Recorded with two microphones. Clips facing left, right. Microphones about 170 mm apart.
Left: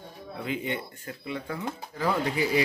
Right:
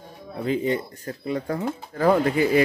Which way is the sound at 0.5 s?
40° right (ahead or behind).